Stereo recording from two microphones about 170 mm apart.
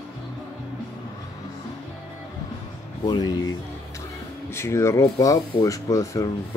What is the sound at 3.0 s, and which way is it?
Speech, 25° left (ahead or behind).